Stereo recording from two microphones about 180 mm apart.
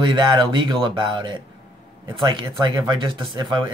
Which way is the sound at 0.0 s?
25° right (ahead or behind).